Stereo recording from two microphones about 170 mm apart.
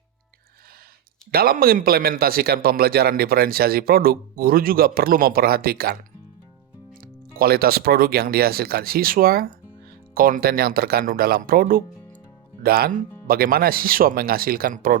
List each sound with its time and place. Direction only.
1.3 s a man's voice: 60° right (ahead or behind)
7.0 s a man's voice: 60° right (ahead or behind)